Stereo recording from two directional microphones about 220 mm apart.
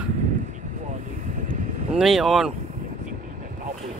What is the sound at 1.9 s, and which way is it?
Speech, centre (ahead or behind).